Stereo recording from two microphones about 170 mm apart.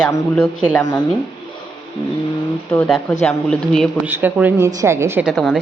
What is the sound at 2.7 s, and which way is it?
A woman's voice, 5° left (ahead or behind).